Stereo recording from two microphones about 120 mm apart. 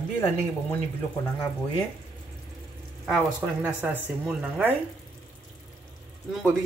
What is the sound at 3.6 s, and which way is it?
Speech, 10° right (ahead or behind).